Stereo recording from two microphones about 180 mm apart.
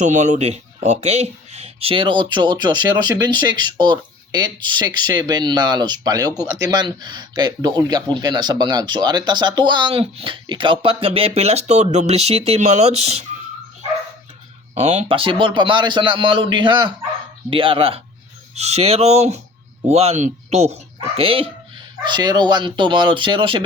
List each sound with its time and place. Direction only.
0.0 s speech: 40° right (ahead or behind)
14.8 s speech: 35° right (ahead or behind)